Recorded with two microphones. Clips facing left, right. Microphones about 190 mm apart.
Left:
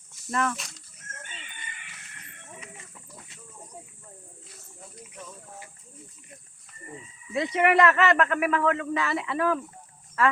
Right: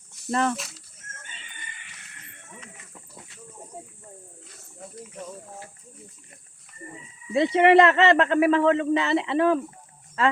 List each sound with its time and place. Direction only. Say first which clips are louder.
0.3 s speech: right 4 dB; 30° right (ahead or behind)
0.5 s speech: right 6 dB; centre (ahead or behind)
7.3 s speech: right 6 dB; 25° right (ahead or behind)